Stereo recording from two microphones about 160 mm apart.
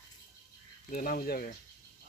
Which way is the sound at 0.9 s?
60° left (ahead or behind).